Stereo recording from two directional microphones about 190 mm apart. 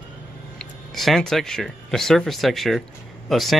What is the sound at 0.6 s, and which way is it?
Speech, centre (ahead or behind).